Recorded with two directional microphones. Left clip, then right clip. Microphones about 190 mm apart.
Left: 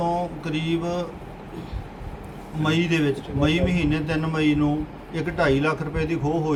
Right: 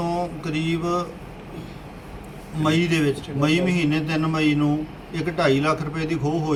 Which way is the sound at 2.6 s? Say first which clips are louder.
Right 1 dB; centre (ahead or behind).